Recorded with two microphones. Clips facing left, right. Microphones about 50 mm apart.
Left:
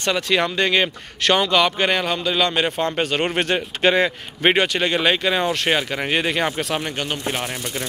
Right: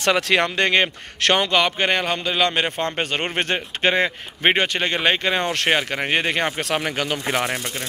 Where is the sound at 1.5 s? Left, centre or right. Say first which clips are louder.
Left 1 dB; right.